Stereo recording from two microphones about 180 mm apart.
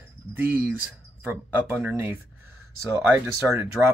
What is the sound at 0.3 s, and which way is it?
Speech, 10° right (ahead or behind).